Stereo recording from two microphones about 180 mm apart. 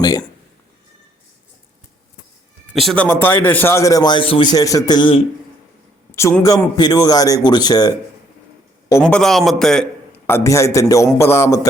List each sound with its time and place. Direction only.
2.7 s a man's voice: 5° left (ahead or behind); by 5.2 s 25° left (ahead or behind)
6.1 s a man's voice: 15° left (ahead or behind)
9.0 s a man's voice: 5° left (ahead or behind)